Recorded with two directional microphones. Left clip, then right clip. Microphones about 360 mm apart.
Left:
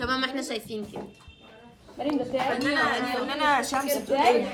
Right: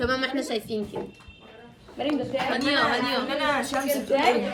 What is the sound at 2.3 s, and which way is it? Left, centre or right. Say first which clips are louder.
Speech: left 1 dB; left.